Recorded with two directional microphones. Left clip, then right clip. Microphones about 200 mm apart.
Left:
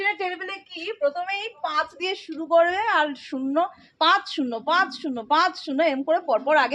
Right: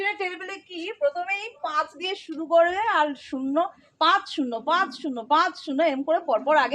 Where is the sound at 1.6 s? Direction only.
20° left (ahead or behind).